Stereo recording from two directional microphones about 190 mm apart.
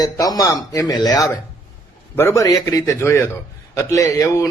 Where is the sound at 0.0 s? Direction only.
20° left (ahead or behind).